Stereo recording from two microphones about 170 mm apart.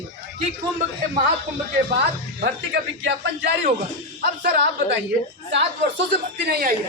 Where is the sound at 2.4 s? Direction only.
85° right.